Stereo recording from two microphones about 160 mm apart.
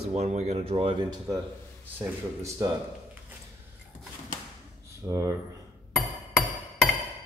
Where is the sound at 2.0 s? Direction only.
20° right (ahead or behind).